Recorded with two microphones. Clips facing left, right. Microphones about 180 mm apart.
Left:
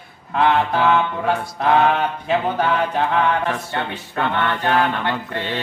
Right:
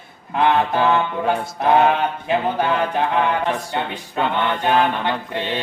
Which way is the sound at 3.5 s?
15° right (ahead or behind).